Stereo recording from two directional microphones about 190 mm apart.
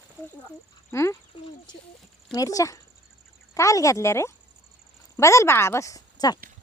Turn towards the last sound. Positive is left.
turn(degrees=20)  # may be behind; listen again after turning